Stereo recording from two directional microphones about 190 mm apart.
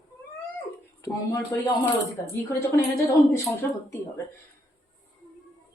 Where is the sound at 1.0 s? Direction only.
15° left (ahead or behind).